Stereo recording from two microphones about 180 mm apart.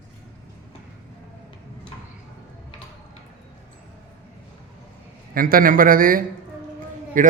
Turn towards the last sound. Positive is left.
turn(degrees=-45)  # may be behind; listen again after turning